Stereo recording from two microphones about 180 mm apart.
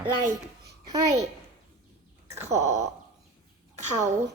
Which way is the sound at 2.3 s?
40° right (ahead or behind).